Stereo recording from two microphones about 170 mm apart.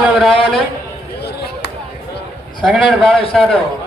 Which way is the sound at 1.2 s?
75° left (ahead or behind).